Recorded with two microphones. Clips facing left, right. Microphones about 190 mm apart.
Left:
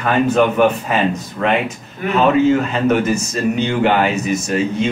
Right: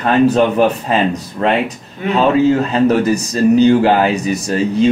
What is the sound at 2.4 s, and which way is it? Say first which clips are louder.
Speech: right 2 dB; 35° right (ahead or behind).